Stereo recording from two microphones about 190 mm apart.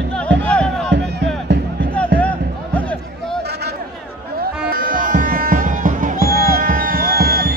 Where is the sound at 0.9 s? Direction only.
65° right (ahead or behind).